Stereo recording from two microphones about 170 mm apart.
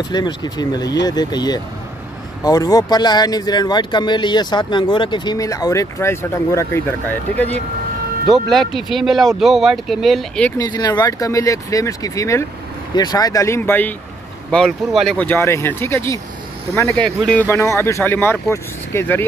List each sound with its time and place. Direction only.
0.1 s speech: 25° left (ahead or behind); by 10.5 s 5° left (ahead or behind)
10.6 s speech: 25° left (ahead or behind)
17.2 s speech: 5° left (ahead or behind)